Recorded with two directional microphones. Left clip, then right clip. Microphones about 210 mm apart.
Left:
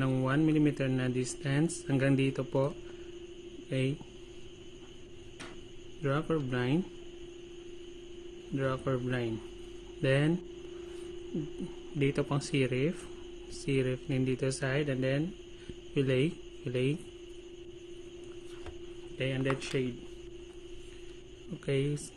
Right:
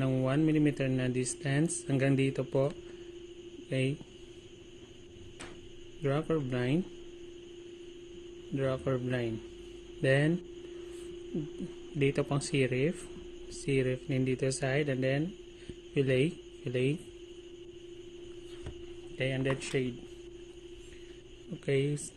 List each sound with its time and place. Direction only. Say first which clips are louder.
0.0 s speech: even; 10° right (ahead or behind)
6.0 s speech: even; 10° right (ahead or behind)
8.5 s speech: right 1 dB; 10° right (ahead or behind)
12.0 s a man's voice: right 1 dB; 10° right (ahead or behind)
19.1 s speech: even; 20° right (ahead or behind)
21.6 s speech: right 2 dB; 10° right (ahead or behind)